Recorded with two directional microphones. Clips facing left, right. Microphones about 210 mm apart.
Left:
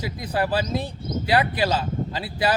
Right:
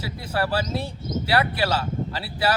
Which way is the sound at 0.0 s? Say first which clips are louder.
Left 1 dB; 15° left (ahead or behind).